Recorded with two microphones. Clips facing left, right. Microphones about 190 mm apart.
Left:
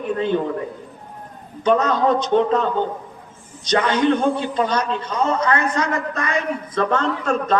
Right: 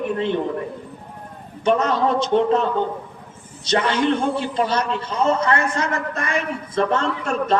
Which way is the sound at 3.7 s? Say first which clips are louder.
Left 2 dB; 30° right (ahead or behind).